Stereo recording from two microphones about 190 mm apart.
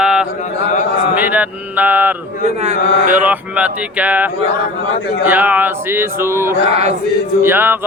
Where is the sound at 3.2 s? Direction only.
5° right (ahead or behind).